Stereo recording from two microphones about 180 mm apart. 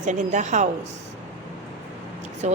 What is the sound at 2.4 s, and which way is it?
Speech, 40° right (ahead or behind).